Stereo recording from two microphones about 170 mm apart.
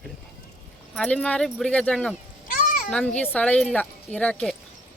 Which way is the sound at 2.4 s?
55° left (ahead or behind).